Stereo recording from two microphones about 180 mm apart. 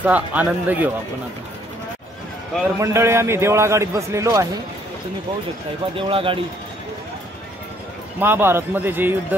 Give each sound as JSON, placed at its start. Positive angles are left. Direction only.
{"t": 0.0, "sound": "a man's voice", "side_deg": -10}
{"t": 2.6, "sound": "a man's voice", "side_deg": -15}
{"t": 5.9, "sound": "speech", "side_deg": -30}
{"t": 8.2, "sound": "a man's voice", "side_deg": -10}